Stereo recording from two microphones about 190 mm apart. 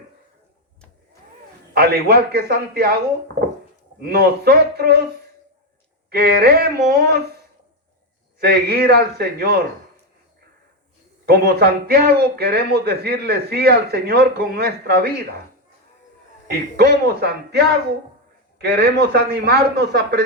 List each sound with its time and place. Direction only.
1.7 s a man's voice: 55° right (ahead or behind)
4.0 s a man's voice: 55° right (ahead or behind)
6.1 s a man's voice: 55° right (ahead or behind)
8.4 s a man's voice: 55° right (ahead or behind)
11.3 s a man's voice: 55° right (ahead or behind)
16.5 s a man's voice: 55° right (ahead or behind)